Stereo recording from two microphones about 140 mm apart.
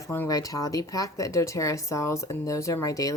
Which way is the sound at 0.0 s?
20° left (ahead or behind).